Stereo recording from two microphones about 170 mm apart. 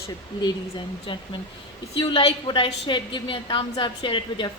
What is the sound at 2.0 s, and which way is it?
A woman's voice, 30° left (ahead or behind).